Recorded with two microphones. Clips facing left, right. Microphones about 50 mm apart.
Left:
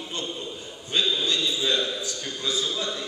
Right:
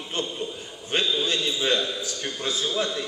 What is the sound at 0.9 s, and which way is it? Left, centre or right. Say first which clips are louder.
A man's voice: right 1 dB; right.